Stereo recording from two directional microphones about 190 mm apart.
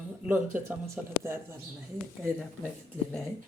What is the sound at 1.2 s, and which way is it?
Speech, 10° right (ahead or behind).